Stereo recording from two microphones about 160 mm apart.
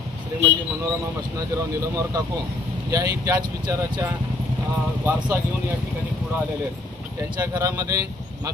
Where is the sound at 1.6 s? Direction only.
20° right (ahead or behind).